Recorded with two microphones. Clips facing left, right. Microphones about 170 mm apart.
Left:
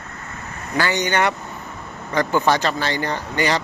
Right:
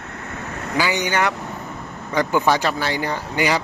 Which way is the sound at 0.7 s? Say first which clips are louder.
Left 1 dB; 10° right (ahead or behind).